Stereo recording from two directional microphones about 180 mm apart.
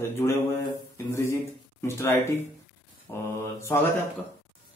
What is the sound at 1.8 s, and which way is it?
Speech, 15° left (ahead or behind).